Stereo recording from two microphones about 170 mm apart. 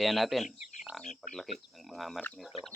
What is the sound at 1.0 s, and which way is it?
Speech, 45° left (ahead or behind).